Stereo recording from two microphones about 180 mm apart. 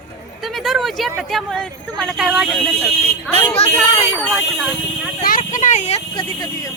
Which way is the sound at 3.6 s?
35° left (ahead or behind).